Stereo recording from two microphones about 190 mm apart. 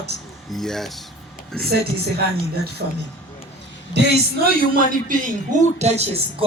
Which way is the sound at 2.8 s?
65° right (ahead or behind).